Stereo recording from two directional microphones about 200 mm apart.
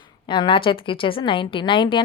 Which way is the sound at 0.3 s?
25° left (ahead or behind).